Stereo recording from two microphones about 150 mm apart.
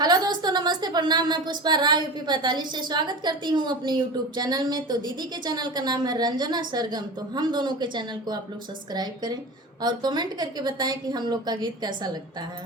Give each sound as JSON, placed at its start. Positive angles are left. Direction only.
{"t": 0.0, "sound": "a woman's voice", "side_deg": -25}